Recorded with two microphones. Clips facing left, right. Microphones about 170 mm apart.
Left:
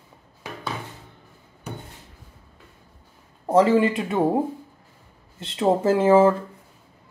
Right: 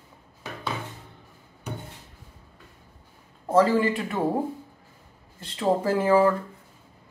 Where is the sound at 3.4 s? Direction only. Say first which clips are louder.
Left 3 dB; 20° left (ahead or behind).